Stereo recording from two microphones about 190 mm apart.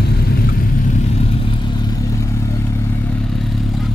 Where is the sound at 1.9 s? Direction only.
15° left (ahead or behind).